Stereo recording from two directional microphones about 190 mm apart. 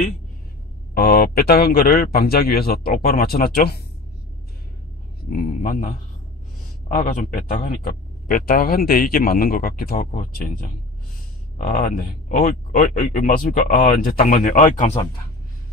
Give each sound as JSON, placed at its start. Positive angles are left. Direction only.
{"t": 0.9, "sound": "a man's voice", "side_deg": 55}
{"t": 5.3, "sound": "a man's voice", "side_deg": 50}